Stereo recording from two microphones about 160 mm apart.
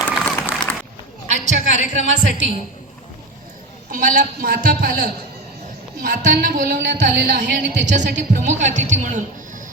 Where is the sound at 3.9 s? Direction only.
60° right (ahead or behind); by 8.2 s 90° right.